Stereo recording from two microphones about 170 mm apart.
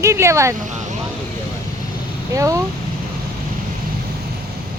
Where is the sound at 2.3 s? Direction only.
20° right (ahead or behind).